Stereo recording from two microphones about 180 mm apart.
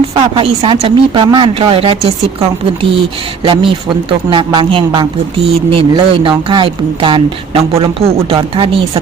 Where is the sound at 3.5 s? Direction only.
25° right (ahead or behind).